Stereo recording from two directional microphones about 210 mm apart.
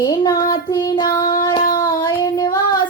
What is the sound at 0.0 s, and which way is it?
Child singing, 20° left (ahead or behind).